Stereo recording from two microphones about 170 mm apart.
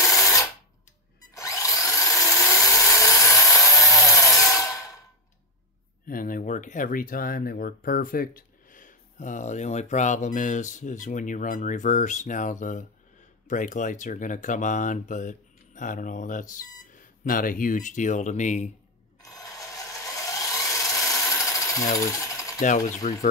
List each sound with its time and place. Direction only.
0.0 s a sound: 20° left (ahead or behind)
1.3 s drill: 20° left (ahead or behind)
6.0 s speech: 55° left (ahead or behind)
19.2 s wood: 20° left (ahead or behind)
22.0 s a sound: 20° left (ahead or behind)
22.6 s speech: 45° left (ahead or behind)